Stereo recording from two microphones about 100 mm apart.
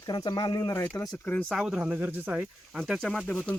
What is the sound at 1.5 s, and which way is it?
Speech, centre (ahead or behind).